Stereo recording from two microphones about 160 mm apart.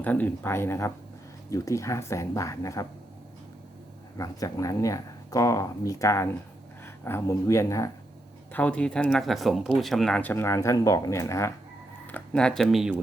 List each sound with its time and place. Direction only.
0.0 s speech: 10° left (ahead or behind)
4.2 s speech: 20° left (ahead or behind)
8.5 s speech: 10° left (ahead or behind)
12.1 s speech: 5° left (ahead or behind)